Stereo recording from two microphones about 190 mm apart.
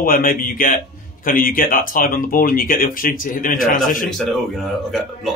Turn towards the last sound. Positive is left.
turn(degrees=0)  # may be behind; listen again after turning